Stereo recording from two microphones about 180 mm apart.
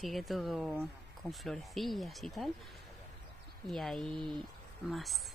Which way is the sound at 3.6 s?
Centre (ahead or behind).